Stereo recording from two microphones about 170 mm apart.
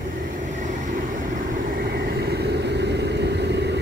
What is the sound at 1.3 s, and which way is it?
Vehicle, 60° right (ahead or behind).